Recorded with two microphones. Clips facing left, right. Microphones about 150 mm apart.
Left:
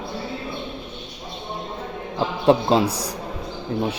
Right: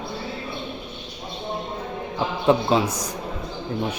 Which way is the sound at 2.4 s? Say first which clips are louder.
Left 2 dB; 30° left (ahead or behind).